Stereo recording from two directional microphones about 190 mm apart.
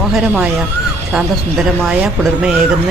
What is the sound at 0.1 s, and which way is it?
Speech, 5° right (ahead or behind).